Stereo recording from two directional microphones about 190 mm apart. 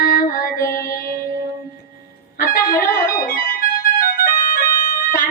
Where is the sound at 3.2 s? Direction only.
50° left (ahead or behind).